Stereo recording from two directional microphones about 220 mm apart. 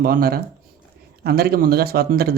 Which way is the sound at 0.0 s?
40° right (ahead or behind).